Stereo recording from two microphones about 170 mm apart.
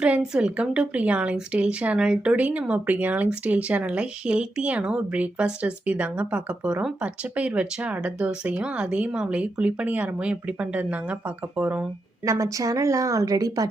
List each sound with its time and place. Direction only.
0.0 s a woman's voice: 5° right (ahead or behind)
12.2 s a woman's voice: 20° right (ahead or behind)